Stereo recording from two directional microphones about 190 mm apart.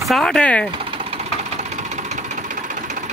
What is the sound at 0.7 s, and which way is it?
Engine, 30° right (ahead or behind).